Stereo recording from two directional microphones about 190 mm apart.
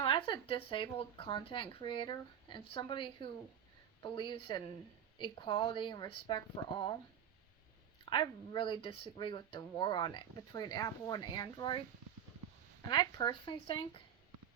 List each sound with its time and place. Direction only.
0.0 s speech: 25° left (ahead or behind)
8.1 s speech: 25° left (ahead or behind)
12.9 s speech: 25° left (ahead or behind)